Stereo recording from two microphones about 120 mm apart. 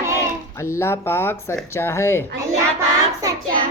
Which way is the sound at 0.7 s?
20° left (ahead or behind).